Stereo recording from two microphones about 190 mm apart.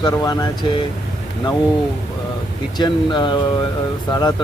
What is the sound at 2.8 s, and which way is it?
Speech, 25° left (ahead or behind).